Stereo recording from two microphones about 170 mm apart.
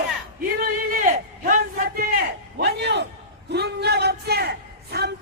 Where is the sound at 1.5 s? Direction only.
50° right (ahead or behind).